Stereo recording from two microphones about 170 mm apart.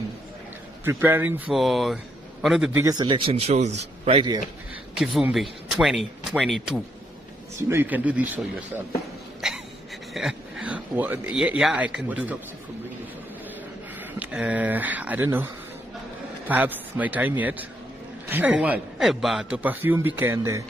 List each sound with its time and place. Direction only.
0.8 s a man's voice: 15° right (ahead or behind)
1.5 s speech: centre (ahead or behind)
2.7 s speech: 20° right (ahead or behind)
4.9 s a man's voice: 5° right (ahead or behind)
9.4 s a sound: 5° right (ahead or behind)
10.1 s speech: 5° right (ahead or behind)
14.2 s a man's voice: 10° right (ahead or behind)
16.4 s a man's voice: 10° right (ahead or behind)